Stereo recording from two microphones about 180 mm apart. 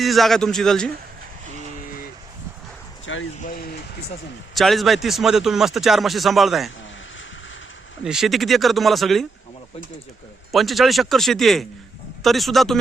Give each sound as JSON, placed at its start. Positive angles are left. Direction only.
{"t": 0.0, "sound": "speech", "side_deg": 0}
{"t": 3.1, "sound": "speech", "side_deg": 90}
{"t": 3.4, "sound": "speech", "side_deg": 55}
{"t": 4.5, "sound": "speech", "side_deg": 0}
{"t": 8.0, "sound": "speech", "side_deg": -5}
{"t": 10.5, "sound": "speech", "side_deg": 0}